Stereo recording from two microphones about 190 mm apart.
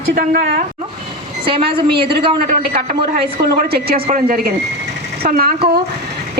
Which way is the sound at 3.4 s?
55° right (ahead or behind).